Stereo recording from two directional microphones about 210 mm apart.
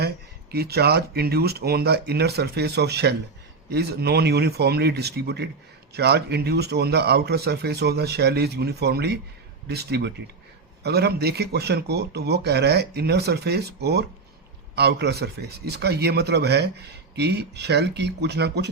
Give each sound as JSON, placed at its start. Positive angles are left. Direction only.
{"t": 0.5, "sound": "a man's voice", "side_deg": -50}